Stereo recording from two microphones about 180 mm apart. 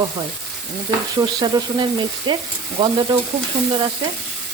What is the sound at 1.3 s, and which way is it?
Frying, 25° right (ahead or behind).